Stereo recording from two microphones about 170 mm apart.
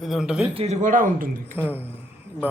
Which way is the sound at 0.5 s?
40° right (ahead or behind).